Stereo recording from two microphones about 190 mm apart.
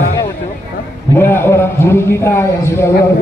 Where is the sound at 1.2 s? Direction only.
10° left (ahead or behind).